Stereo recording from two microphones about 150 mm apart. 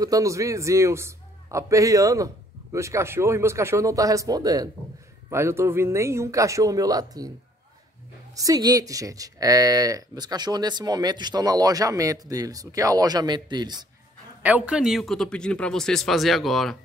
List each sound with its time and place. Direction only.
0.0 s speech: 20° right (ahead or behind)
8.4 s speech: 25° right (ahead or behind)
14.4 s a man's voice: 10° right (ahead or behind)